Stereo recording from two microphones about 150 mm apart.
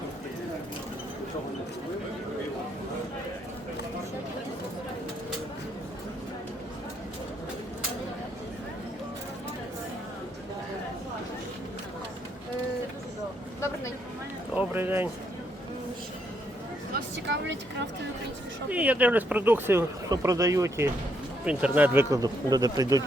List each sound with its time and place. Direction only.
14.5 s a sound: 10° right (ahead or behind)
18.7 s speech: 10° right (ahead or behind)
22.1 s speech: 25° right (ahead or behind)